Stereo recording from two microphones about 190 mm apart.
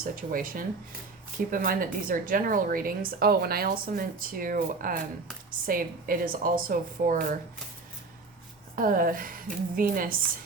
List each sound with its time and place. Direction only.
0.0 s a woman's voice: 45° right (ahead or behind)
8.7 s a woman's voice: 45° right (ahead or behind)